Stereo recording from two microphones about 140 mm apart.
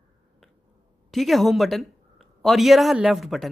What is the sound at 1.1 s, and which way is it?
A woman's voice, centre (ahead or behind).